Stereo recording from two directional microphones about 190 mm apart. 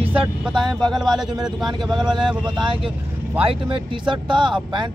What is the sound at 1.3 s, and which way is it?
Speech, 20° right (ahead or behind).